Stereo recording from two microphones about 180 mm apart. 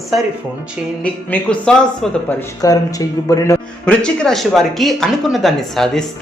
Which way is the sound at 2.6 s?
20° left (ahead or behind).